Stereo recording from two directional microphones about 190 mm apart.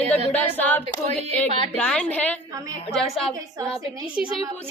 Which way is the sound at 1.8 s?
5° left (ahead or behind).